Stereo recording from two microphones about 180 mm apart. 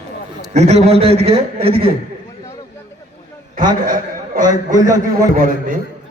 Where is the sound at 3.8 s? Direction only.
50° right (ahead or behind).